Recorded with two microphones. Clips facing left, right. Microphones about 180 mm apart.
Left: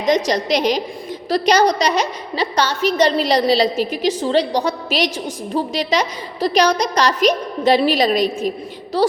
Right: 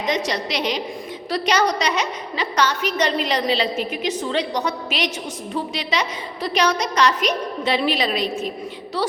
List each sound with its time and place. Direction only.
0.1 s a woman's voice: 40° left (ahead or behind)